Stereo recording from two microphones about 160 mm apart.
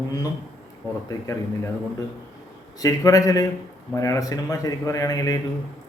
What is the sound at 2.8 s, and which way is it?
A man's voice, 20° left (ahead or behind).